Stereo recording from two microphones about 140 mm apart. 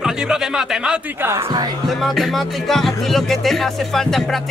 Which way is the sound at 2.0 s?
Centre (ahead or behind).